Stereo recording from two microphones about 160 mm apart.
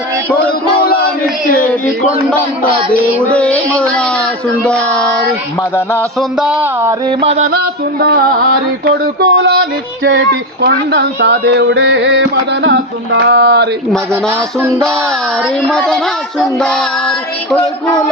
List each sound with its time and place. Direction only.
3.3 s speech: 5° left (ahead or behind)
6.1 s child singing: 5° right (ahead or behind)
7.2 s a sound: 40° right (ahead or behind)
7.5 s music: 75° right (ahead or behind)
9.2 s speech: 90° right
10.6 s speech: 85° right
13.2 s speech: 90° right
14.1 s music: 15° right (ahead or behind)
15.7 s child singing: 5° left (ahead or behind)